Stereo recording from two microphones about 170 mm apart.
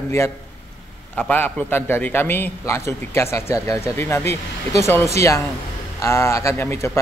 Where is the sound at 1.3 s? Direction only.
10° left (ahead or behind).